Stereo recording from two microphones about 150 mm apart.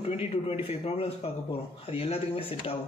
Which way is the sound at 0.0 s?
45° left (ahead or behind).